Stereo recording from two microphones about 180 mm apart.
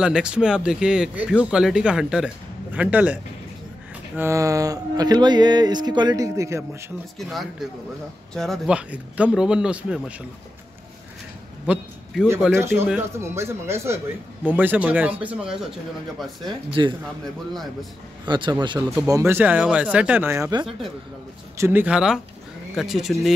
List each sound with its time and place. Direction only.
0.0 s speech: 5° right (ahead or behind)
4.2 s speech: 15° right (ahead or behind)
7.2 s speech: centre (ahead or behind)
11.6 s a sound: 5° right (ahead or behind)
12.5 s speech: 15° right (ahead or behind)
16.4 s speech: 25° right (ahead or behind)
18.2 s speech: 25° right (ahead or behind); by 23.1 s centre (ahead or behind)